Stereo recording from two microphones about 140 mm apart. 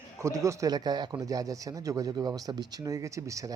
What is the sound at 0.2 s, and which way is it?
Speech, 20° right (ahead or behind).